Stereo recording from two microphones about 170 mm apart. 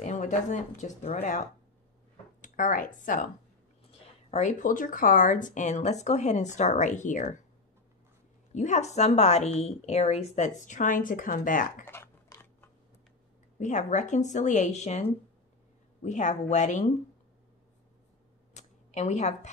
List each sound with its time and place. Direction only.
0.0 s speech: 45° left (ahead or behind)
4.3 s speech: 45° left (ahead or behind)
8.5 s speech: 45° left (ahead or behind)
11.8 s a sound: 15° left (ahead or behind)
13.6 s speech: 45° left (ahead or behind)
18.5 s a sound: 40° left (ahead or behind)